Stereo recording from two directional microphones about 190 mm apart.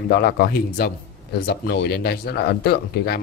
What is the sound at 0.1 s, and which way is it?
Speech, 55° left (ahead or behind).